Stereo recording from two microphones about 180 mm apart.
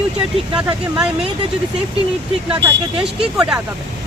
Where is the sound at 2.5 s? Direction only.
5° right (ahead or behind).